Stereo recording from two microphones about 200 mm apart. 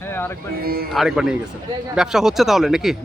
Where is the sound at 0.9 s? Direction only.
Centre (ahead or behind).